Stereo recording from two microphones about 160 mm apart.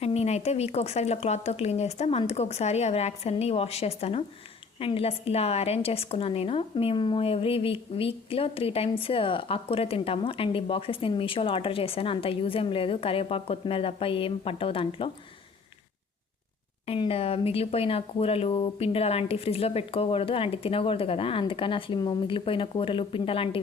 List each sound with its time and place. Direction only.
0.0 s a woman's voice: 40° left (ahead or behind)
16.8 s a woman's voice: 35° left (ahead or behind)